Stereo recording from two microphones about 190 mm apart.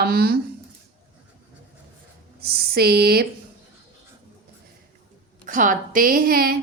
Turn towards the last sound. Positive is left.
turn(degrees=-50)  # may be behind; listen again after turning